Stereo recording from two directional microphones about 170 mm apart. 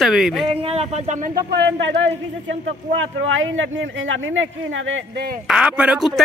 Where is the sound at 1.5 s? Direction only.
90° right.